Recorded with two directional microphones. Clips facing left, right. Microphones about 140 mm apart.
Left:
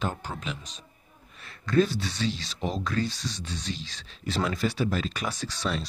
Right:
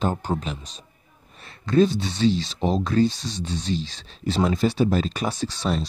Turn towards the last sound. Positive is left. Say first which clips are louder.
# right 6 dB
turn(degrees=-25)  # may be behind; listen again after turning